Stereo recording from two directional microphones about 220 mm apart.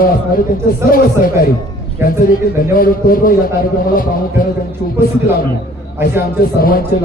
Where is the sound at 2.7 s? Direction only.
40° left (ahead or behind).